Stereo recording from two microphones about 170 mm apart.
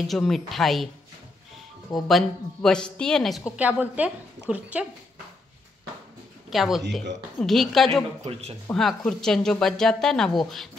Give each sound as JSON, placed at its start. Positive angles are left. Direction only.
{"t": 0.0, "sound": "a woman's voice", "side_deg": 0}
{"t": 2.0, "sound": "a woman's voice", "side_deg": 0}
{"t": 6.5, "sound": "a woman's voice", "side_deg": 0}
{"t": 8.2, "sound": "speech", "side_deg": -35}
{"t": 8.7, "sound": "a woman's voice", "side_deg": 0}